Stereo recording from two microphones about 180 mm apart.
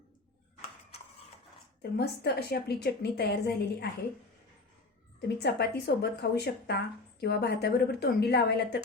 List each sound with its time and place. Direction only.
1.8 s speech: 65° left (ahead or behind)
5.4 s speech: 65° left (ahead or behind)